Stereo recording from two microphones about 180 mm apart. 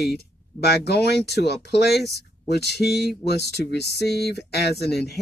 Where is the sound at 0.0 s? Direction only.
65° left (ahead or behind).